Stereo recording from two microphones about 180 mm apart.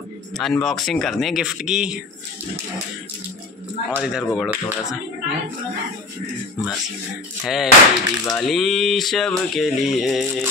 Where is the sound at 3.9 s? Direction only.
5° right (ahead or behind).